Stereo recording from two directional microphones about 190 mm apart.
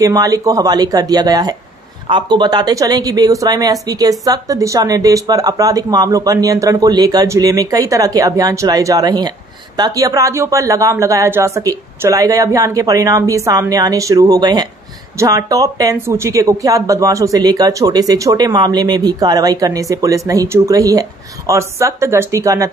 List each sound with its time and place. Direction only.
0.0 s speech: 20° right (ahead or behind)